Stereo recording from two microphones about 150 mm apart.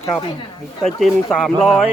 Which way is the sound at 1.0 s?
Centre (ahead or behind).